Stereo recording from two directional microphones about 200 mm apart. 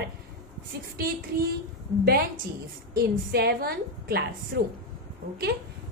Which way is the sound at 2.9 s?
55° right (ahead or behind).